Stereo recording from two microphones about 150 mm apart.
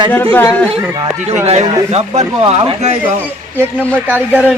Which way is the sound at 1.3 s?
45° right (ahead or behind).